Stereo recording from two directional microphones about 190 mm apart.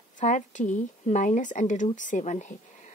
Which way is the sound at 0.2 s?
40° left (ahead or behind).